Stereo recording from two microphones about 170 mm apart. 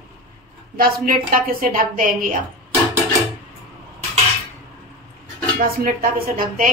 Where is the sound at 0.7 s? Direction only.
55° right (ahead or behind).